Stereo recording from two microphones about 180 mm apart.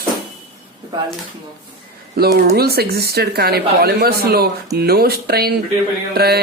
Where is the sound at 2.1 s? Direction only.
60° right (ahead or behind).